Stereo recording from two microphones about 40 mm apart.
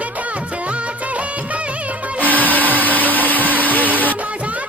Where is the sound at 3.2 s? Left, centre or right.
Left.